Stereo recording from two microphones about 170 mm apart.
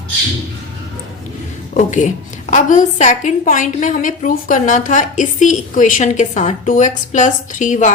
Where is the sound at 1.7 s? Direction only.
45° left (ahead or behind).